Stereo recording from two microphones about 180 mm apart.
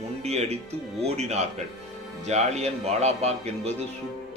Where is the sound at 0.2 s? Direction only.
40° right (ahead or behind).